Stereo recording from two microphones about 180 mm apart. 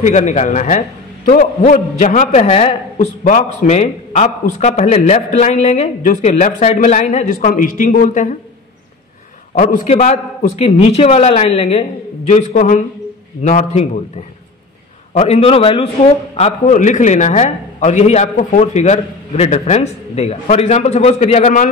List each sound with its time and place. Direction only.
0.0 s a man's voice: 40° left (ahead or behind)
9.6 s a man's voice: 45° left (ahead or behind)
16.3 s a man's voice: 40° left (ahead or behind)